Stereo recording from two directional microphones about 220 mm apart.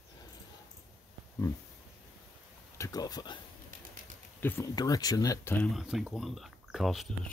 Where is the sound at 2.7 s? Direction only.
15° left (ahead or behind).